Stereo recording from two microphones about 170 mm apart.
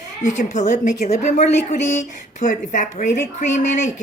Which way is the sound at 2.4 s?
50° left (ahead or behind).